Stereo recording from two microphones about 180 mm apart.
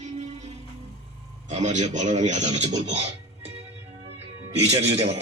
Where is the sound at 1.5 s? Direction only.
40° right (ahead or behind).